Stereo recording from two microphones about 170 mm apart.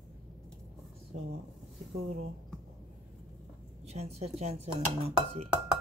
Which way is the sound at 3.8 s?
40° right (ahead or behind).